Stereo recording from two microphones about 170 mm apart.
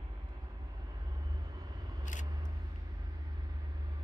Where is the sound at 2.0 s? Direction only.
45° left (ahead or behind).